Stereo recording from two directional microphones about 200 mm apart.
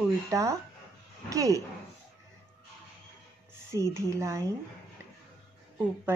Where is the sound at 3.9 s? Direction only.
15° right (ahead or behind).